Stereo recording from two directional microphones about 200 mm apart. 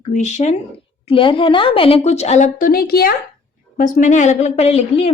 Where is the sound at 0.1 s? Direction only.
35° left (ahead or behind).